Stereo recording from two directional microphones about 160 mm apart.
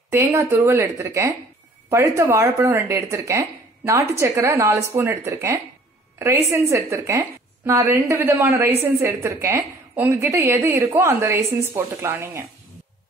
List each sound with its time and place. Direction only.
0.1 s a woman's voice: 20° right (ahead or behind)